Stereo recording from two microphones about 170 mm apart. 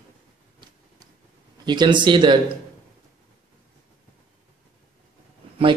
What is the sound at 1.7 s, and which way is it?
Speech, 25° right (ahead or behind).